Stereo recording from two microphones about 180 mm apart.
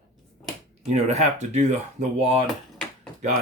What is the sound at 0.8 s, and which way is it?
Speech, 35° right (ahead or behind).